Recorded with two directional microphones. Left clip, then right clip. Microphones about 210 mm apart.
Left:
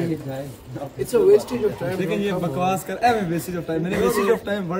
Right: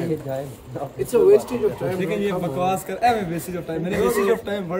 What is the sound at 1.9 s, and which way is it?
A man's voice, centre (ahead or behind).